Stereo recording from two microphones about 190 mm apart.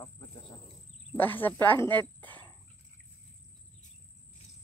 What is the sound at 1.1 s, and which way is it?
Speech, 10° left (ahead or behind).